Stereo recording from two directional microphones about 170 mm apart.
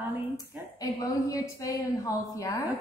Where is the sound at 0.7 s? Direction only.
20° left (ahead or behind).